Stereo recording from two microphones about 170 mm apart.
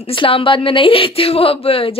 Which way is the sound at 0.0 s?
30° left (ahead or behind).